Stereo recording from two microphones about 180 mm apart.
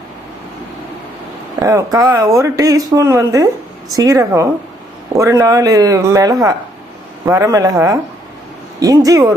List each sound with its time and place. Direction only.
1.6 s speech: 15° right (ahead or behind)